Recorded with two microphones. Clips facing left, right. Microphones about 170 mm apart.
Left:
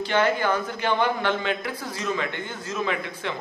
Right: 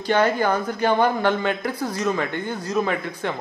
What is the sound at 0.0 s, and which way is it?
Speech, 40° right (ahead or behind).